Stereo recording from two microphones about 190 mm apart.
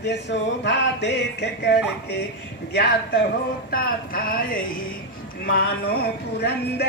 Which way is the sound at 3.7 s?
50° left (ahead or behind).